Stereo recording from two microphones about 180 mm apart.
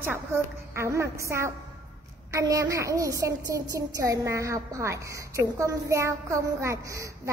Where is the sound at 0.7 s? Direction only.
15° right (ahead or behind).